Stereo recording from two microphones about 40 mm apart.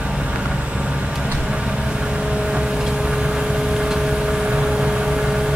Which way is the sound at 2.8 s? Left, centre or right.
Centre.